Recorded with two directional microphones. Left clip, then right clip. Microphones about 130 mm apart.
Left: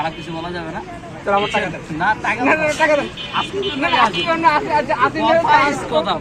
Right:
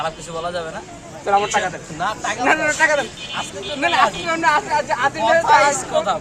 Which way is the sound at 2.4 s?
50° right (ahead or behind).